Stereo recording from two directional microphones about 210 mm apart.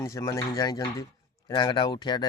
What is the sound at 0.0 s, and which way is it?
Speech, 15° left (ahead or behind).